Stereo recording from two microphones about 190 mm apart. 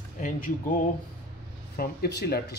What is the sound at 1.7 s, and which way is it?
Speech, 55° left (ahead or behind).